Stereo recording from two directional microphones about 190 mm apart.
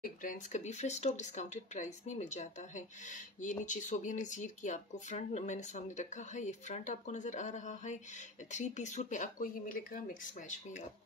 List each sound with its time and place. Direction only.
0.0 s speech: 45° left (ahead or behind)